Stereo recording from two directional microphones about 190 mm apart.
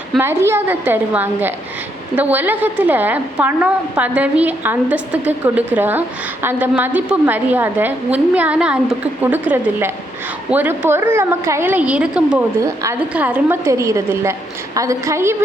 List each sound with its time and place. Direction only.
0.2 s a woman's voice: 15° right (ahead or behind)
10.5 s a woman's voice: 10° right (ahead or behind)